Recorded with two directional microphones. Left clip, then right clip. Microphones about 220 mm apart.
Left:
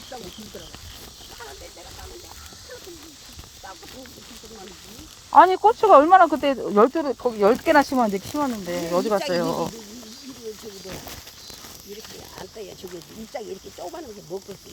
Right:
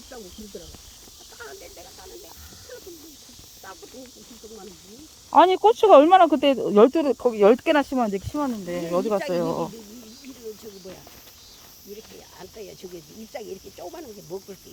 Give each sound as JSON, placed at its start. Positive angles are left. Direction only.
{"t": 5.3, "sound": "speech", "side_deg": -20}
{"t": 7.8, "sound": "speech", "side_deg": 10}
{"t": 8.9, "sound": "speech", "side_deg": 5}
{"t": 13.3, "sound": "speech", "side_deg": 25}